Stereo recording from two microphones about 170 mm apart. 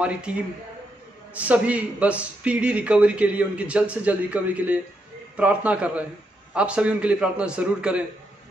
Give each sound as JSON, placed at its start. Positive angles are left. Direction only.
{"t": 0.0, "sound": "a man's voice", "side_deg": -5}